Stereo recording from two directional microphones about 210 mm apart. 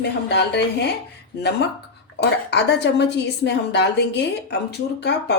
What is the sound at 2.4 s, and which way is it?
A woman's voice, 55° left (ahead or behind).